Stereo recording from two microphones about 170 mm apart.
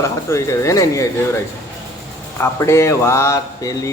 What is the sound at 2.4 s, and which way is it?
A man's voice, 15° left (ahead or behind).